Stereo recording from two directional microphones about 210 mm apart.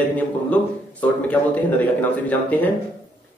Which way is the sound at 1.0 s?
5° left (ahead or behind).